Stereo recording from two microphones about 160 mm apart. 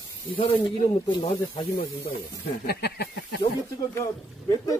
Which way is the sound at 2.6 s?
85° left.